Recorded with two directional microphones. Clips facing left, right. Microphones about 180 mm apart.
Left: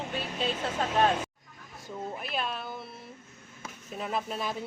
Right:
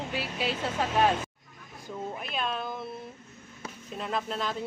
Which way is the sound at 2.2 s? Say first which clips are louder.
Right 2 dB; 5° left (ahead or behind).